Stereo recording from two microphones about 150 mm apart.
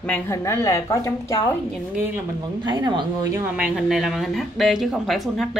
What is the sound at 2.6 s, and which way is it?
Speech, 30° right (ahead or behind).